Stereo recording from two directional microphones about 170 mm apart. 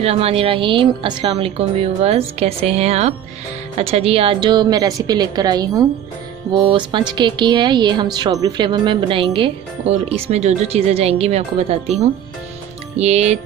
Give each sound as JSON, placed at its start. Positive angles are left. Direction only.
{"t": 0.0, "sound": "a woman's voice", "side_deg": -35}